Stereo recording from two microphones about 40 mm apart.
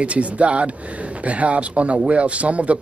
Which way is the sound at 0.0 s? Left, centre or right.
Right.